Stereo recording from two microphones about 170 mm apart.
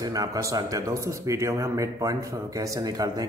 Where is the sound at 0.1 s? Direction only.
20° right (ahead or behind).